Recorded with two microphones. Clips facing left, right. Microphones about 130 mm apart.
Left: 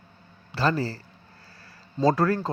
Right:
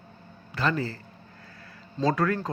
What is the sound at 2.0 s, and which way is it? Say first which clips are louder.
Speech: left 3 dB; 35° left (ahead or behind).